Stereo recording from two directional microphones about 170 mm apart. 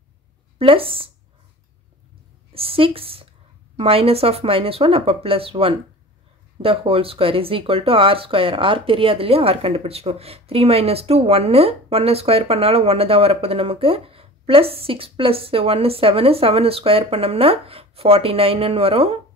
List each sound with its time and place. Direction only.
0.6 s speech: 30° right (ahead or behind)
2.5 s speech: 35° right (ahead or behind)